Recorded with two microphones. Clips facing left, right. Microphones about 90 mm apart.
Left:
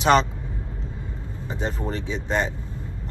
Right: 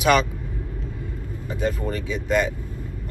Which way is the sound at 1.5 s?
30° left (ahead or behind).